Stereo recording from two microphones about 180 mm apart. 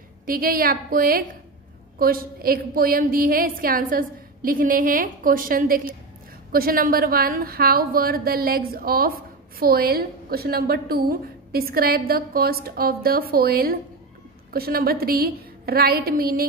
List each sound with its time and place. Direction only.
0.3 s a woman's voice: 55° right (ahead or behind)